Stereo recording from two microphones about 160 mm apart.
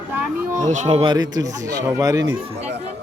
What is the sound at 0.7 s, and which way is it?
Speech, 45° right (ahead or behind).